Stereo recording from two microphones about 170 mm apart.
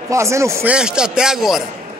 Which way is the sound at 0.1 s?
15° right (ahead or behind).